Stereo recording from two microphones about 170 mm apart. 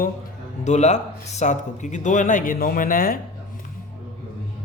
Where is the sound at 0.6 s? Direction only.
45° left (ahead or behind).